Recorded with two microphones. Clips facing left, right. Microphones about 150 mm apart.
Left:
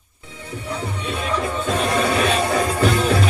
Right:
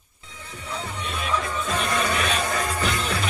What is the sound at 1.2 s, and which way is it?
Music, 25° left (ahead or behind).